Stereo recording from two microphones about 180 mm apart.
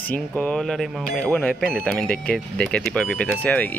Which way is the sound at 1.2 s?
5° left (ahead or behind).